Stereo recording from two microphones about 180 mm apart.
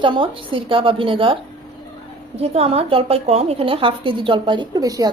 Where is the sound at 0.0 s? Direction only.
25° right (ahead or behind).